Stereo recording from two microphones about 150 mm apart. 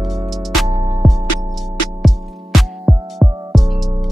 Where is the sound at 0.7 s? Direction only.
40° right (ahead or behind).